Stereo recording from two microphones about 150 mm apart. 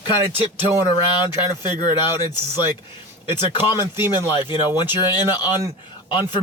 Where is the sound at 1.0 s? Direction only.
30° left (ahead or behind).